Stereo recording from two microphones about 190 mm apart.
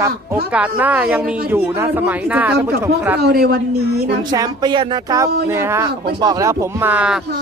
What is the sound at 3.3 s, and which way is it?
Speech, 55° right (ahead or behind).